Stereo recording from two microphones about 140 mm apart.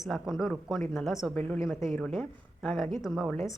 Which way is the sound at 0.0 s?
Centre (ahead or behind).